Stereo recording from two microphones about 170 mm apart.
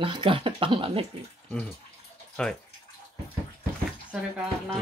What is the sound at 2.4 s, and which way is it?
Speech, 5° left (ahead or behind).